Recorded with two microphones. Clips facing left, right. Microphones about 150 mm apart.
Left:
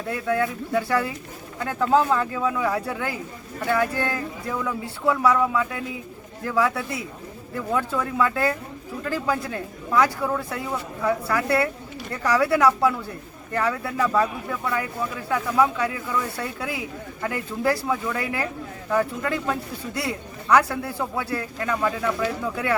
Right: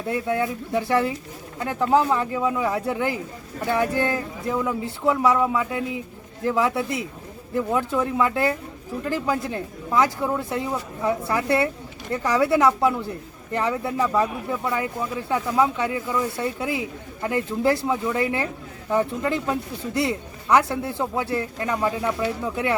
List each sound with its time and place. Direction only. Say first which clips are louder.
0.1 s speech: even; 20° right (ahead or behind)